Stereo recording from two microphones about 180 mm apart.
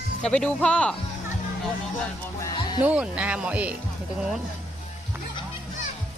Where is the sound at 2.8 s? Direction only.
5° right (ahead or behind).